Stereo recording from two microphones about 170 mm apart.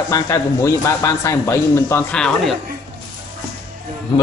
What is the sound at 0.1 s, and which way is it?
A man's voice, 20° left (ahead or behind).